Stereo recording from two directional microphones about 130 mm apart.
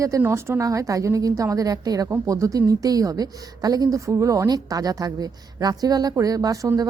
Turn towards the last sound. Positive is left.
turn(degrees=-25)  # may be behind; listen again after turning